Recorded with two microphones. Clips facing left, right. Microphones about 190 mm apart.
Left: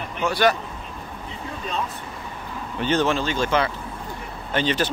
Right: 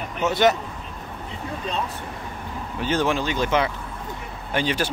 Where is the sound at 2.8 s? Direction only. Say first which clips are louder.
Left 1 dB; 10° right (ahead or behind).